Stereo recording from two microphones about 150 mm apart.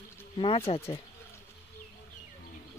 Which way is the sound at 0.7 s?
35° left (ahead or behind).